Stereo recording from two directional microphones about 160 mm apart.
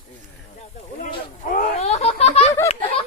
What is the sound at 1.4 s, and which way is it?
Baby laughter, 55° left (ahead or behind).